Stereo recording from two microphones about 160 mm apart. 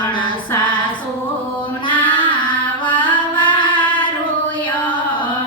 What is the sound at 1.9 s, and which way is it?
Music, 30° left (ahead or behind).